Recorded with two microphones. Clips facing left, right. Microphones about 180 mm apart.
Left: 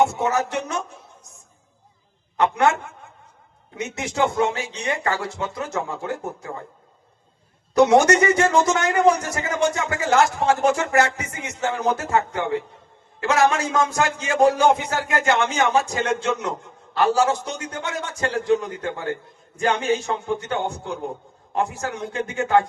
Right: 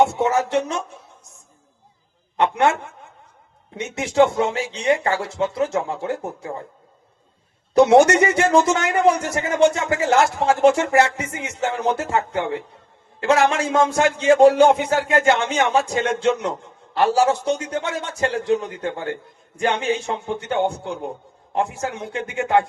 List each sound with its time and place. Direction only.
0.1 s a man's voice: 30° right (ahead or behind)
2.4 s a man's voice: 25° right (ahead or behind)
3.8 s a man's voice: 30° right (ahead or behind)
7.7 s a man's voice: 30° right (ahead or behind)